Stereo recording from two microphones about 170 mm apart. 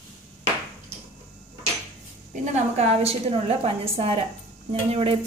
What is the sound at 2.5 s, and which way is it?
A woman's voice, 40° right (ahead or behind).